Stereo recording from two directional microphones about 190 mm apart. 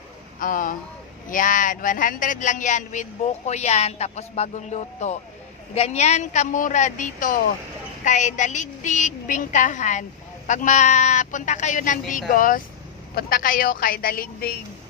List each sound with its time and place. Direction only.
0.4 s a woman's voice: 45° left (ahead or behind)